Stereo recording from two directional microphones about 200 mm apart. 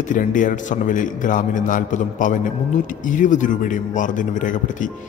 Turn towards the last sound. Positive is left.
turn(degrees=40)  # may be behind; listen again after turning